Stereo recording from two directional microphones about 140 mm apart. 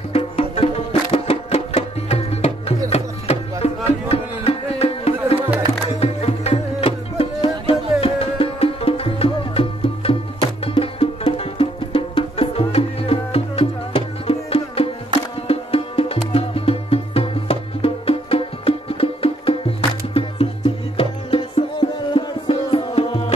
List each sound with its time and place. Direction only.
0.1 s music: 45° left (ahead or behind)